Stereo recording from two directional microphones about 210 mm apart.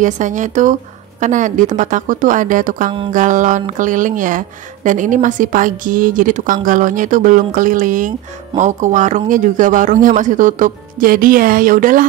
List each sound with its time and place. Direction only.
0.0 s a woman's voice: 35° right (ahead or behind)